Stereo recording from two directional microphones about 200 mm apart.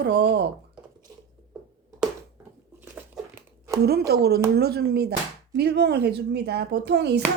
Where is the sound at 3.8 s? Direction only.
55° right (ahead or behind).